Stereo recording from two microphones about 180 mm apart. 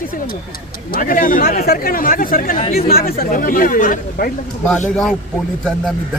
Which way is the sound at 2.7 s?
55° left (ahead or behind).